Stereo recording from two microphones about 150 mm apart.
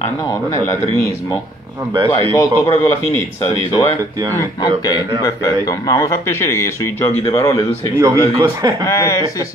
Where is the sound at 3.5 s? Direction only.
35° left (ahead or behind).